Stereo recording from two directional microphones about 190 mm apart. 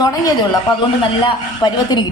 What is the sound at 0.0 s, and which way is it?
Speech, 20° left (ahead or behind).